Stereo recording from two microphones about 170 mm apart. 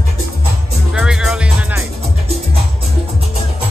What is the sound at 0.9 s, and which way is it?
Music, 5° right (ahead or behind).